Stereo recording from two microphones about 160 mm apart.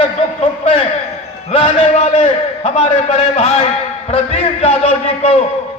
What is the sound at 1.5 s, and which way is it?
A man's voice, 40° left (ahead or behind).